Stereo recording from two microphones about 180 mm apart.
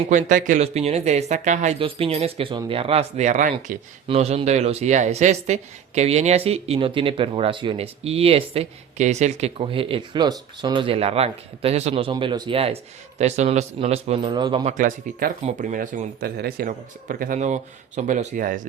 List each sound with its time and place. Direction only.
0.1 s speech: 45° right (ahead or behind); by 14.7 s 25° right (ahead or behind)
14.7 s speech: 45° right (ahead or behind)